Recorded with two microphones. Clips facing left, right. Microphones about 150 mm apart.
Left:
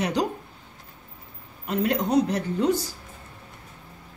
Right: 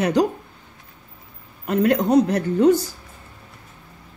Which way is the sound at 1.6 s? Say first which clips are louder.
Right 6 dB; 55° right (ahead or behind).